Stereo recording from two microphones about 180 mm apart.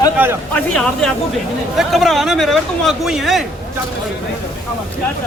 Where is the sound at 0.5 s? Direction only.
Centre (ahead or behind).